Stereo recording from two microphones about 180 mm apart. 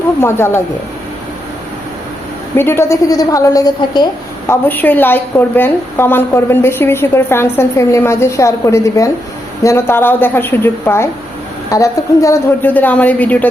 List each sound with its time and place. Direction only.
0.2 s a woman's voice: 15° left (ahead or behind)
2.6 s a woman's voice: 15° left (ahead or behind)